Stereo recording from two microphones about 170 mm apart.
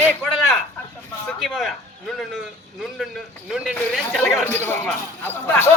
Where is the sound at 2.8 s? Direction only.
Centre (ahead or behind).